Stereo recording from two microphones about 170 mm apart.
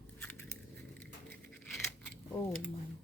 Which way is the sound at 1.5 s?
10° left (ahead or behind).